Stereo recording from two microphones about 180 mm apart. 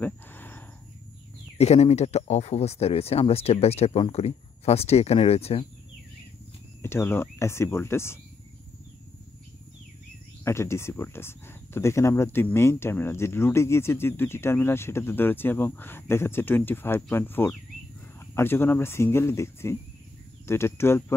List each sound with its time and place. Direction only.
0.0 s a sound: 10° left (ahead or behind)
1.6 s speech: 35° left (ahead or behind)
6.8 s speech: 15° left (ahead or behind)
10.4 s speech: 15° left (ahead or behind)